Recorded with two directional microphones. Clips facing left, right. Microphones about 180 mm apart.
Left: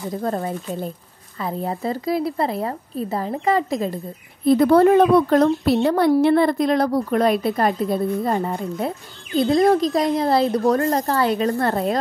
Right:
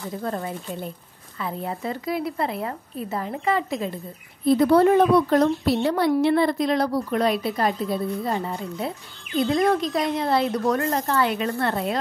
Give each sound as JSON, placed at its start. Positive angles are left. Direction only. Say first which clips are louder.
{"t": 0.2, "sound": "speech", "louder": "left 4 dB", "side_deg": 40}
{"t": 4.5, "sound": "a woman's voice", "louder": "left 3 dB", "side_deg": 50}
{"t": 9.3, "sound": "speech", "louder": "left 4 dB", "side_deg": 35}